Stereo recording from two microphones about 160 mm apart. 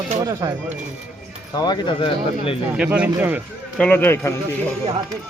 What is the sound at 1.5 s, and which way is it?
Speech, 25° left (ahead or behind).